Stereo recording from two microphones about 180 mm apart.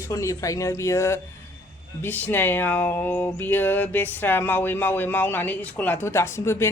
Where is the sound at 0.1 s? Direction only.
20° left (ahead or behind).